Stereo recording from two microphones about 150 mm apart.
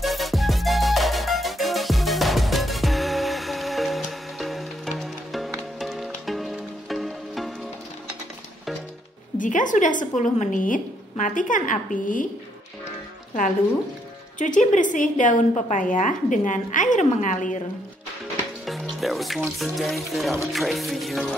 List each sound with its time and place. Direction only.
0.0 s music: centre (ahead or behind)
9.4 s a woman's voice: 60° left (ahead or behind)
14.4 s a woman's voice: 55° left (ahead or behind)
18.7 s speech: centre (ahead or behind)
20.5 s music: centre (ahead or behind)